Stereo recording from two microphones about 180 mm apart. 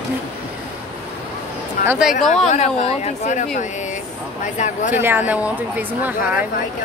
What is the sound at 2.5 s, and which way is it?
A woman's voice, 40° left (ahead or behind).